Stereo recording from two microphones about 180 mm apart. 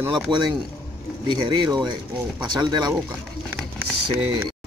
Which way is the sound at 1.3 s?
25° right (ahead or behind).